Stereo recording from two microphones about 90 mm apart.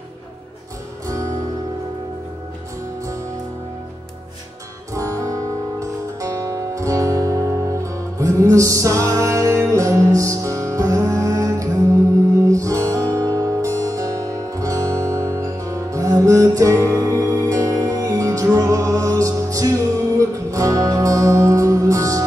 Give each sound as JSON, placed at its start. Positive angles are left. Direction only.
{"t": 1.0, "sound": "music", "side_deg": -40}
{"t": 4.9, "sound": "music", "side_deg": -40}